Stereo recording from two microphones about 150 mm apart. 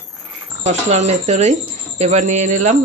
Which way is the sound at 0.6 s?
45° right (ahead or behind).